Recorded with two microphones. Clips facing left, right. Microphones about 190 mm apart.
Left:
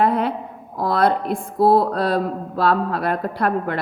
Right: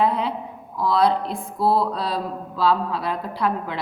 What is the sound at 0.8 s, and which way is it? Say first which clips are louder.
A woman's voice: left 1 dB; 55° left (ahead or behind).